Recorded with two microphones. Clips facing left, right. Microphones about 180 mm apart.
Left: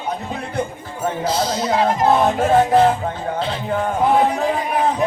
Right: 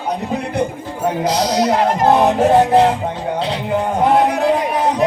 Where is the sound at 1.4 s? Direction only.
75° right (ahead or behind).